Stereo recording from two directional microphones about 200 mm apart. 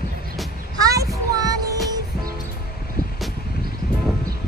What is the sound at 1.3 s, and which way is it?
Music, 20° right (ahead or behind).